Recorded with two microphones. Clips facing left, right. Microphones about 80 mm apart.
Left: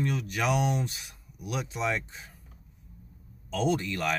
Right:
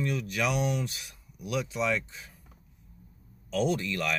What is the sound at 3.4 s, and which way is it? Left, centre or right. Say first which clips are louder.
Speech: even; left.